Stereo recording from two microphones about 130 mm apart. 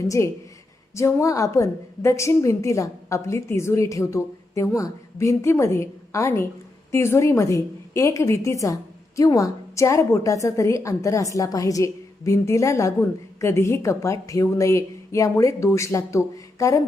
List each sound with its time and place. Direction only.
0.0 s a woman's voice: 25° left (ahead or behind)